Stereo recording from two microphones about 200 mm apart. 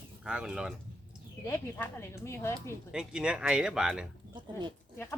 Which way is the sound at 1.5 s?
10° left (ahead or behind).